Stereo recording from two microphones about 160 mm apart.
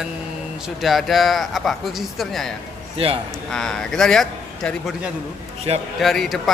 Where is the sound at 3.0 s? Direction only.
35° right (ahead or behind).